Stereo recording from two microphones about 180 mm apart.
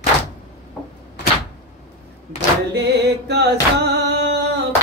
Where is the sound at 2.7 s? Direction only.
65° right (ahead or behind).